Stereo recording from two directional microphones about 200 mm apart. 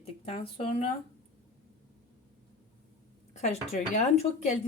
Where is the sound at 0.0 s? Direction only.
25° left (ahead or behind).